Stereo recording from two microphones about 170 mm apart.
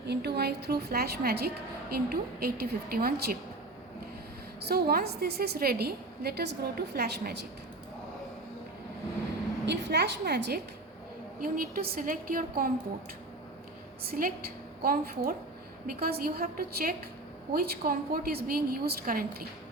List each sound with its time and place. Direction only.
0.1 s a woman's voice: 75° right (ahead or behind)
4.6 s a woman's voice: 65° right (ahead or behind)
9.6 s a woman's voice: 80° right
11.3 s a woman's voice: 60° right (ahead or behind)
14.0 s a woman's voice: 60° right (ahead or behind)